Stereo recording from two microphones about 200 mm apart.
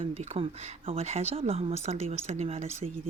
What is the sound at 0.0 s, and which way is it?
Speech, 30° right (ahead or behind).